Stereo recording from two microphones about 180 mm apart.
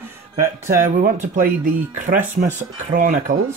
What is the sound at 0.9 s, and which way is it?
Speech, 45° right (ahead or behind).